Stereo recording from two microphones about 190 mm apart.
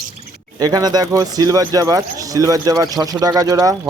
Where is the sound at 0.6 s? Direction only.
20° right (ahead or behind).